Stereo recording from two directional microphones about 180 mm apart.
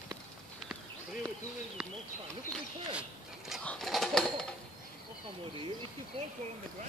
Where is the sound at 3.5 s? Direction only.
Centre (ahead or behind).